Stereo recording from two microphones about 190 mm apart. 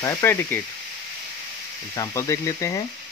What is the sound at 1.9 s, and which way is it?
Speech, 15° left (ahead or behind).